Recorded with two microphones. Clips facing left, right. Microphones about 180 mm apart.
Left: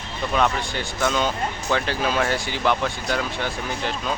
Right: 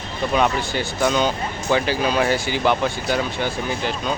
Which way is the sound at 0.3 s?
5° right (ahead or behind).